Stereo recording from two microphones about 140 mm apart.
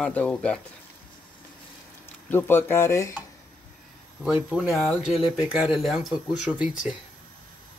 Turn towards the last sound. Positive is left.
turn(degrees=-10)  # may be behind; listen again after turning